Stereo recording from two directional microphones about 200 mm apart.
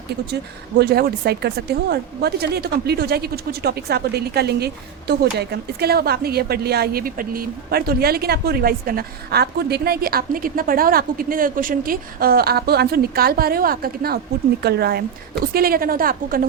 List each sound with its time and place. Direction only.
0.8 s speech: 50° right (ahead or behind)